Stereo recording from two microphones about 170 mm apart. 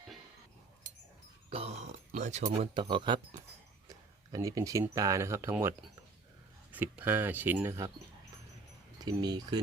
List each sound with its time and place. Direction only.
1.5 s speech: 35° right (ahead or behind)
2.9 s speech: 30° right (ahead or behind)
9.0 s speech: 25° right (ahead or behind)